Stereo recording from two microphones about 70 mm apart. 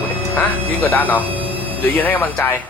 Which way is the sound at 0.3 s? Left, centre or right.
Left.